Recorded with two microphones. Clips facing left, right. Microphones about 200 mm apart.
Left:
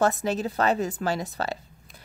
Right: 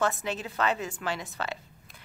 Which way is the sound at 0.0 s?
40° left (ahead or behind).